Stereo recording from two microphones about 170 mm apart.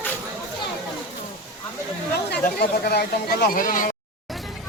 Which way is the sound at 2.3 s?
70° left (ahead or behind).